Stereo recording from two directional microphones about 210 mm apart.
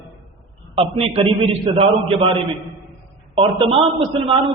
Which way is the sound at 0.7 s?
25° right (ahead or behind).